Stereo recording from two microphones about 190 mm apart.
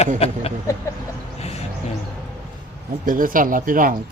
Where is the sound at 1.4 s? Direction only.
35° left (ahead or behind).